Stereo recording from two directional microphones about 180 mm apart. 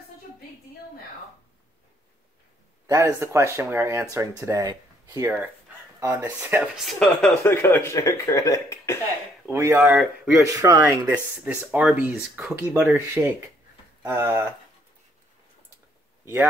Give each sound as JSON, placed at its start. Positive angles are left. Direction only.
{"t": 2.9, "sound": "speech", "side_deg": -15}
{"t": 6.8, "sound": "speech", "side_deg": 0}
{"t": 9.5, "sound": "speech", "side_deg": -10}
{"t": 11.3, "sound": "speech", "side_deg": -10}